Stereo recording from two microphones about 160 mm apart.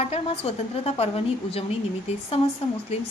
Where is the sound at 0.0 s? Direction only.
40° left (ahead or behind).